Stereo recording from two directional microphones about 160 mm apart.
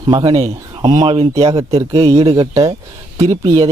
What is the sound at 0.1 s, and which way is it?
Speech, 25° right (ahead or behind).